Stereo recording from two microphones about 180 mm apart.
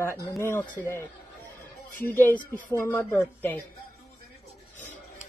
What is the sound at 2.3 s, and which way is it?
Speech, 50° left (ahead or behind).